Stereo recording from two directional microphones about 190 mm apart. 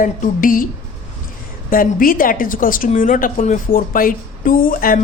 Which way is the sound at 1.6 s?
50° left (ahead or behind).